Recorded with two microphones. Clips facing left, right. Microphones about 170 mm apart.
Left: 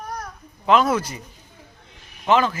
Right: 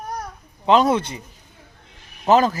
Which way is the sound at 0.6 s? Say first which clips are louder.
Right 2 dB; 30° right (ahead or behind).